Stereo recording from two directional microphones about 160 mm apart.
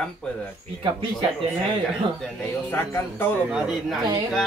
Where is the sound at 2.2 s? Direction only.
10° left (ahead or behind).